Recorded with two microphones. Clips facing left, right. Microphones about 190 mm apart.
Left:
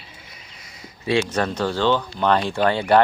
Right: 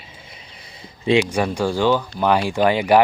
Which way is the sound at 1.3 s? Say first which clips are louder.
Right 2 dB; 10° right (ahead or behind).